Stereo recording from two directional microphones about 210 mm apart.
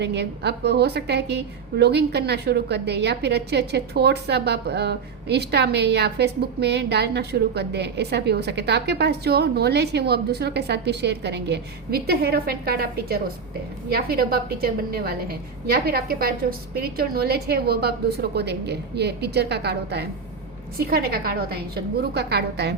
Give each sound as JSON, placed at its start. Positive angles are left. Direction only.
{"t": 0.0, "sound": "a woman's voice", "side_deg": -55}